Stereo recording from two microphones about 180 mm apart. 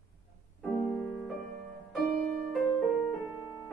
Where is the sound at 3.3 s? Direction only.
10° right (ahead or behind).